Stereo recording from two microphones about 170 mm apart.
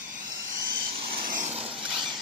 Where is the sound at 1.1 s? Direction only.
55° right (ahead or behind).